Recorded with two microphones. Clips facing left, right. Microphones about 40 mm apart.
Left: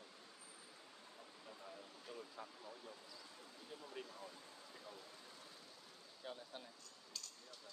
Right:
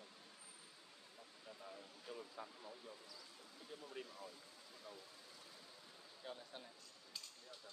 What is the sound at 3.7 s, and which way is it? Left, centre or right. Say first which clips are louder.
Speech: even; centre.